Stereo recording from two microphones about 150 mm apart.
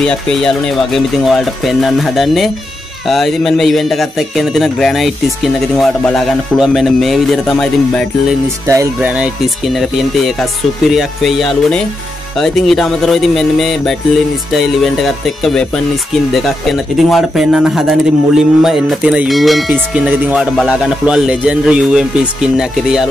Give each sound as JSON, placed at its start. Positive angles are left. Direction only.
{"t": 0.0, "sound": "speech", "side_deg": 5}
{"t": 8.6, "sound": "speech", "side_deg": -20}
{"t": 9.8, "sound": "speech", "side_deg": 0}
{"t": 19.7, "sound": "tubular bells", "side_deg": -10}
{"t": 20.5, "sound": "speech", "side_deg": -5}